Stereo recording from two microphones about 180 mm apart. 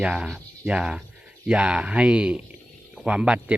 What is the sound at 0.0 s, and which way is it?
A man's voice, 5° right (ahead or behind).